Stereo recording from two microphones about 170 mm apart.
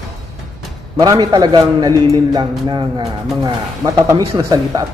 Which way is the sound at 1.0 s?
20° right (ahead or behind).